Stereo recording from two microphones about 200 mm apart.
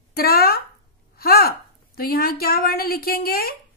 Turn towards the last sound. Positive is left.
turn(degrees=50)  # may be behind; listen again after turning